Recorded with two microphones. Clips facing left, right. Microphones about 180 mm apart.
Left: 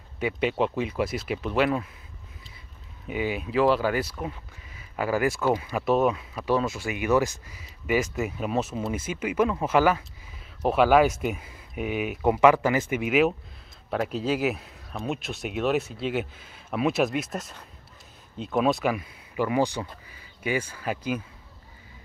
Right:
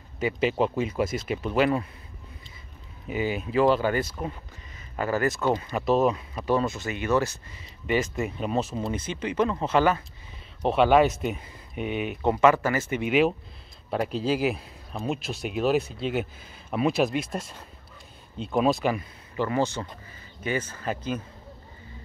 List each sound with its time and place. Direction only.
0.2 s speech: centre (ahead or behind)
3.1 s speech: 5° left (ahead or behind)
18.4 s speech: centre (ahead or behind)